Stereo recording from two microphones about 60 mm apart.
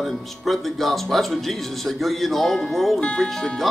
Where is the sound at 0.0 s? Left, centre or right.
Centre.